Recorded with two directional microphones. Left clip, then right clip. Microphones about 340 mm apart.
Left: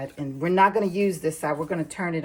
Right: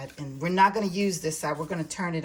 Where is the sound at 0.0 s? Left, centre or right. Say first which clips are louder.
Left 5 dB; centre.